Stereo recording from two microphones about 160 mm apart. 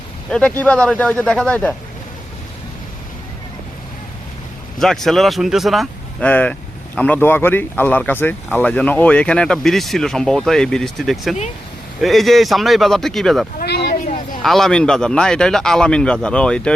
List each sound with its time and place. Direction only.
0.3 s speech: 5° left (ahead or behind)
4.8 s speech: centre (ahead or behind)
13.6 s a sound: 90° left
14.4 s speech: centre (ahead or behind)